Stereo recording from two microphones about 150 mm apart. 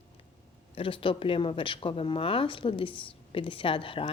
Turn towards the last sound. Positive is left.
turn(degrees=35)  # may be behind; listen again after turning